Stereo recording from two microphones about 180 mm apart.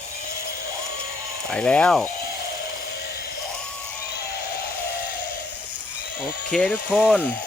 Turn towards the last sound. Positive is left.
turn(degrees=0)  # may be behind; listen again after turning